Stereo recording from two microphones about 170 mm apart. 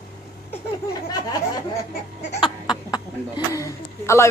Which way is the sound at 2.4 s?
25° left (ahead or behind).